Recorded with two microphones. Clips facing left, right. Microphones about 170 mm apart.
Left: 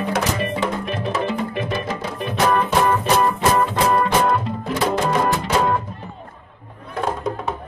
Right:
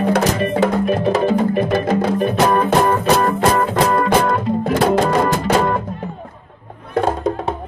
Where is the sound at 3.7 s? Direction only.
45° right (ahead or behind).